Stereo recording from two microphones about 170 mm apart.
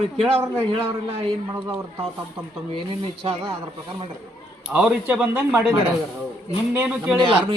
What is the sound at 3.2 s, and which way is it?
Speech, 35° right (ahead or behind).